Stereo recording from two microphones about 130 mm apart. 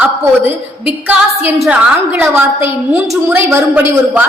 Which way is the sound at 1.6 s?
10° right (ahead or behind).